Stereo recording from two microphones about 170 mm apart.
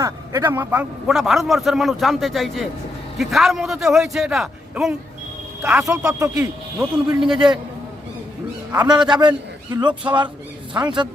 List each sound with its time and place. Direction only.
0.0 s a man's voice: 15° right (ahead or behind)
5.8 s a man's voice: 20° right (ahead or behind); by 7.5 s 5° right (ahead or behind)
9.0 s speech: 25° right (ahead or behind)